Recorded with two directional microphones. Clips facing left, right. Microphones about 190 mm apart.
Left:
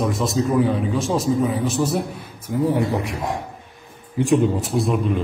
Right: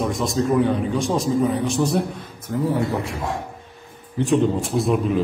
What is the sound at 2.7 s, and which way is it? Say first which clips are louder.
Speech: left 1 dB; 15° left (ahead or behind).